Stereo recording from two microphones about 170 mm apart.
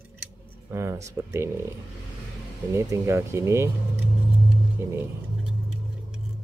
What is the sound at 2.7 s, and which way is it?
Speech, 15° right (ahead or behind).